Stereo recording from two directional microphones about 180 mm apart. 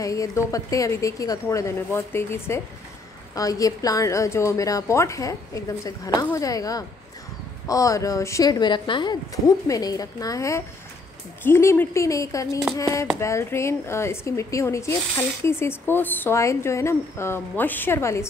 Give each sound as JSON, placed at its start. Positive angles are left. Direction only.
{"t": 0.0, "sound": "a woman's voice", "side_deg": 20}